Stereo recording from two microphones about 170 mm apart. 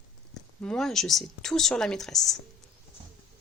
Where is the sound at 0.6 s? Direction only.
5° left (ahead or behind).